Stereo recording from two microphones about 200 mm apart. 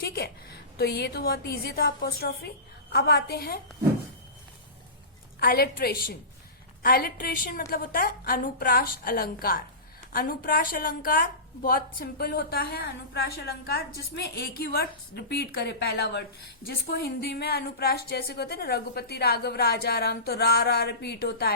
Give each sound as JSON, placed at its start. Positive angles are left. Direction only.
{"t": 0.0, "sound": "a sound", "side_deg": 50}
{"t": 0.8, "sound": "a woman's voice", "side_deg": 55}
{"t": 5.4, "sound": "a woman's voice", "side_deg": 50}